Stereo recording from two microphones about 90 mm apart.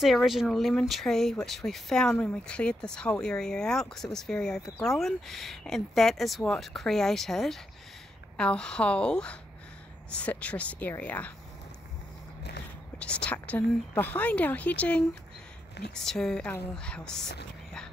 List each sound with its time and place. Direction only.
0.0 s speech: centre (ahead or behind); by 11.3 s 15° left (ahead or behind)
13.0 s speech: 10° left (ahead or behind)